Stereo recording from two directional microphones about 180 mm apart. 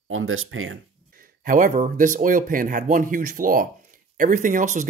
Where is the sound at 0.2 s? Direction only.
90° right.